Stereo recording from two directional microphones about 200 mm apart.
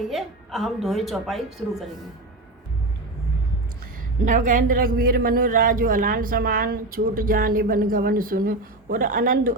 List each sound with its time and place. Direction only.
0.1 s a woman's voice: centre (ahead or behind)
4.3 s a man's voice: 40° right (ahead or behind)